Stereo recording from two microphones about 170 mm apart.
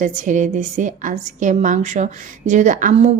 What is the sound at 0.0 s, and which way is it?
A woman's voice, 50° right (ahead or behind).